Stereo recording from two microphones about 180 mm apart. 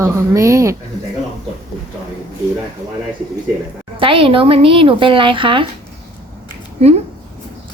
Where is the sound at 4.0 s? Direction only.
30° right (ahead or behind).